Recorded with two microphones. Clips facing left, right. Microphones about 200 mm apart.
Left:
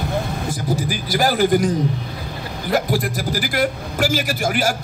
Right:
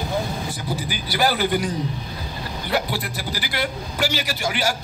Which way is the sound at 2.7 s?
45° left (ahead or behind).